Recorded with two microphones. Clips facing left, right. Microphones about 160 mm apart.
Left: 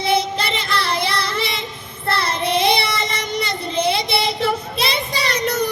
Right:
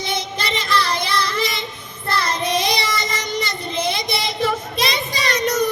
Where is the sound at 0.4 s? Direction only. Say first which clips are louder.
Right 1 dB; 30° left (ahead or behind).